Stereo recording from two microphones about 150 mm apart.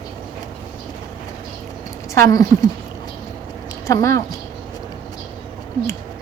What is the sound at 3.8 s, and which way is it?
Speech, 20° left (ahead or behind).